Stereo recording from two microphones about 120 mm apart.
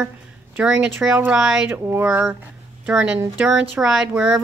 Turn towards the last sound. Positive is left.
turn(degrees=-5)  # may be behind; listen again after turning